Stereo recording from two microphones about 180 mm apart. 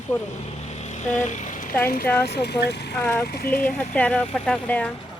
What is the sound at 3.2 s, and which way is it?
Speech, 55° left (ahead or behind).